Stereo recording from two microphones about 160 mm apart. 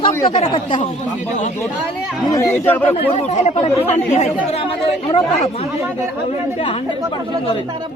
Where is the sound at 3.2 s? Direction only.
45° left (ahead or behind).